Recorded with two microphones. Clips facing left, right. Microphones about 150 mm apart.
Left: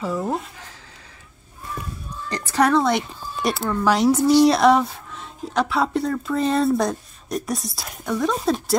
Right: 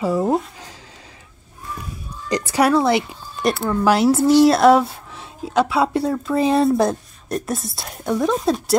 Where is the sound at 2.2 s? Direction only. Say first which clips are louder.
Right 2 dB; 15° right (ahead or behind).